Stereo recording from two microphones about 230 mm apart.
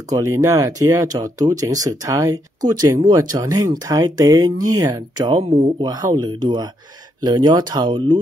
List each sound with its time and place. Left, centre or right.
0.1 s speech: centre